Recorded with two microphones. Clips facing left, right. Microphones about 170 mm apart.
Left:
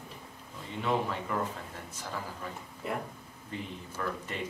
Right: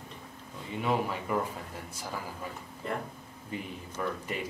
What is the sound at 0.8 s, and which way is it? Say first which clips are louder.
Speech: right 1 dB; 10° right (ahead or behind).